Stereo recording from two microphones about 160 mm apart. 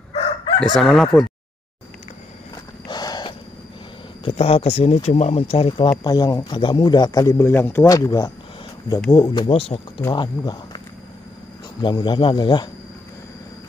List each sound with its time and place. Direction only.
0.1 s crowing: 35° left (ahead or behind)
0.7 s speech: centre (ahead or behind)
2.9 s a sound: 25° left (ahead or behind)
4.2 s speech: 35° left (ahead or behind)
11.8 s speech: 30° left (ahead or behind)